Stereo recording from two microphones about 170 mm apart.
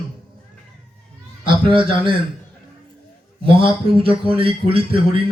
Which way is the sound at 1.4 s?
30° right (ahead or behind).